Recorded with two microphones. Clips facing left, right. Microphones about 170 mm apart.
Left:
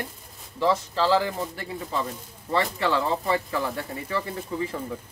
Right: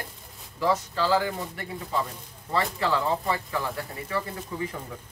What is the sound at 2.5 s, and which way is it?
Speech, 30° left (ahead or behind).